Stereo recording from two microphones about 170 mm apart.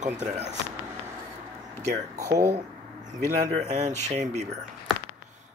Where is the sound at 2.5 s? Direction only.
25° right (ahead or behind).